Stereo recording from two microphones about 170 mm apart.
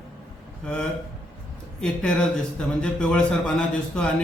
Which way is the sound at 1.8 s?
5° left (ahead or behind).